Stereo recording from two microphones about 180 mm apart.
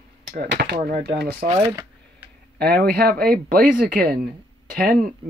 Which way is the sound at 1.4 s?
35° right (ahead or behind).